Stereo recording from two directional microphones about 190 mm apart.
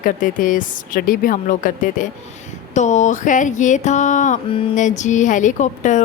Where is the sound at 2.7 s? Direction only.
40° left (ahead or behind).